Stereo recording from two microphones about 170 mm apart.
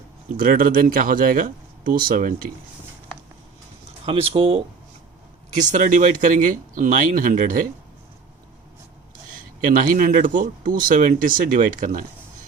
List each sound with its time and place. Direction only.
0.3 s speech: 55° right (ahead or behind)
4.0 s speech: 35° right (ahead or behind)
5.5 s speech: 45° right (ahead or behind)
9.3 s speech: 55° right (ahead or behind)